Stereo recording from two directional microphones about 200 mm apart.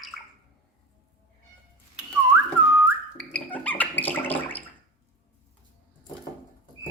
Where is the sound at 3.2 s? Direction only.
5° left (ahead or behind).